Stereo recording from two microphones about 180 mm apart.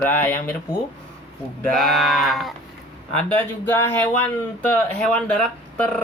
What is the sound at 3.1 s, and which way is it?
Speech, 10° left (ahead or behind).